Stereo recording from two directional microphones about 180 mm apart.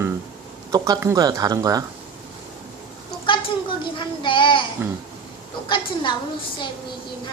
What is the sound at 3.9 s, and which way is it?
Child singing, 25° left (ahead or behind).